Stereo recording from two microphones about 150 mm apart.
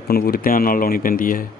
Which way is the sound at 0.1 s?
90° left.